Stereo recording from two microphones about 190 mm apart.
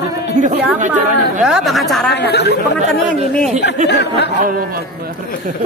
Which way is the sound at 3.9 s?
60° left (ahead or behind).